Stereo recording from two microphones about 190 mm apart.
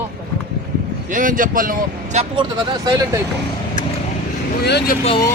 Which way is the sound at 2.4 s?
20° right (ahead or behind).